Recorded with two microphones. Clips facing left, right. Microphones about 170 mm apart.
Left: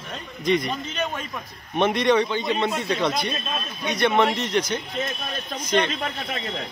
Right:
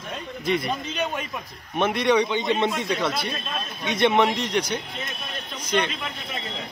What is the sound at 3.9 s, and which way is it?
Speech, 25° right (ahead or behind).